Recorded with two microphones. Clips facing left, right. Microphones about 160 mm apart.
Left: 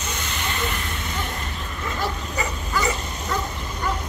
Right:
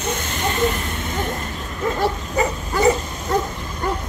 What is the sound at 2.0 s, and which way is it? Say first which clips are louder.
Bow-wow: right 6 dB; 50° right (ahead or behind).